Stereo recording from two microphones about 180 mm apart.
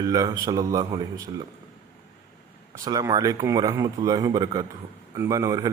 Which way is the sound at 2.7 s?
20° right (ahead or behind).